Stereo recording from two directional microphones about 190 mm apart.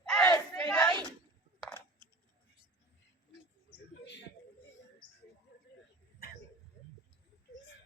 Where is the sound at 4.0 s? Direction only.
65° left (ahead or behind).